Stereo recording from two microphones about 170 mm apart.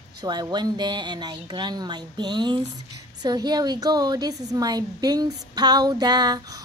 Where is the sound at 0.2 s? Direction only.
25° right (ahead or behind).